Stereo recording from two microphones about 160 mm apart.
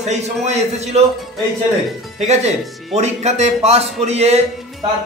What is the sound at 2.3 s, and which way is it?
A man's voice, 45° right (ahead or behind).